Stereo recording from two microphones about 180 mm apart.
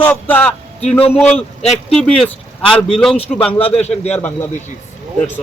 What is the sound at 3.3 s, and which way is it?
Speech, 5° left (ahead or behind).